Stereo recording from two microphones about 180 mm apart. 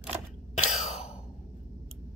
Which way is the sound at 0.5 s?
40° left (ahead or behind).